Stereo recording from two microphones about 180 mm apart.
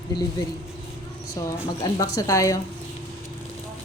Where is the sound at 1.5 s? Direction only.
20° left (ahead or behind).